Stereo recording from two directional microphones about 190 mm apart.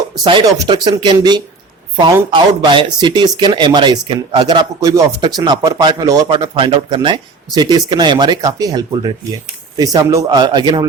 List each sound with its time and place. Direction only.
0.3 s speech: 25° right (ahead or behind)